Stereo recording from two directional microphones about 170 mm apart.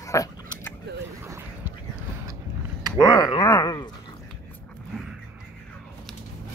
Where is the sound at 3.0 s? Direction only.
25° left (ahead or behind).